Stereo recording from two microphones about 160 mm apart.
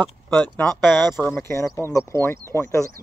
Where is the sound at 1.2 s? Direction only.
15° left (ahead or behind).